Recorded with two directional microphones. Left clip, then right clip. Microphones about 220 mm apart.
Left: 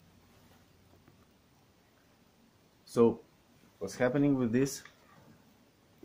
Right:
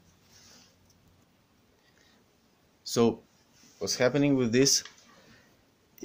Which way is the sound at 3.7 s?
45° right (ahead or behind).